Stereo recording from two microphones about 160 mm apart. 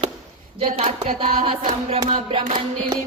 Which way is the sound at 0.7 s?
45° right (ahead or behind).